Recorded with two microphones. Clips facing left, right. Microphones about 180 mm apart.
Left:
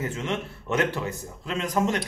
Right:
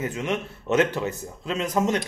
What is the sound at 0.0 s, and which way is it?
A man's voice, 20° right (ahead or behind).